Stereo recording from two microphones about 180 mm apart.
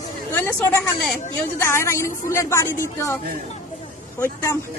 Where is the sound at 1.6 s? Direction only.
15° left (ahead or behind).